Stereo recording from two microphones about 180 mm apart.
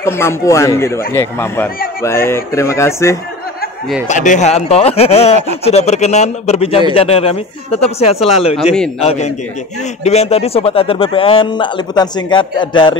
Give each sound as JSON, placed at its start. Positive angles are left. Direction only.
{"t": 0.0, "sound": "speech", "side_deg": 15}
{"t": 4.1, "sound": "a man's voice", "side_deg": 45}